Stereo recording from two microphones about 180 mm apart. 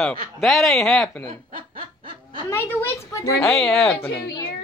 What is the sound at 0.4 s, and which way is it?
Speech, centre (ahead or behind).